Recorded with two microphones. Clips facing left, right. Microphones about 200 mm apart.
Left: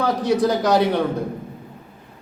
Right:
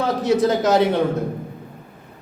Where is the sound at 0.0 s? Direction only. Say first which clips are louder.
Right 1 dB; 25° right (ahead or behind).